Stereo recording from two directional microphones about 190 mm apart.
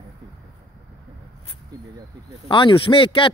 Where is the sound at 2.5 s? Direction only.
25° left (ahead or behind).